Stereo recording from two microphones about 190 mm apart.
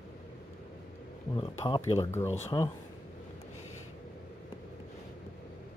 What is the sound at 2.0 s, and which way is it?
Speech, 15° left (ahead or behind).